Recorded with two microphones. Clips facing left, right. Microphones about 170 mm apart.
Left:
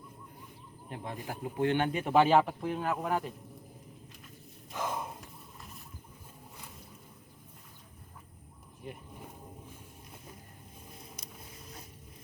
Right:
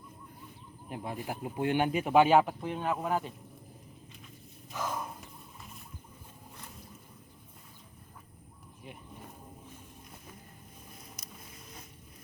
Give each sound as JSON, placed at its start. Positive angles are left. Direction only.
{"t": 0.9, "sound": "speech", "side_deg": -10}
{"t": 4.8, "sound": "a sound", "side_deg": 20}
{"t": 8.8, "sound": "insect", "side_deg": 0}